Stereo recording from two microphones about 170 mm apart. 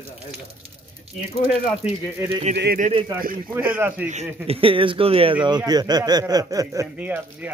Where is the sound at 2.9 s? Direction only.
25° right (ahead or behind).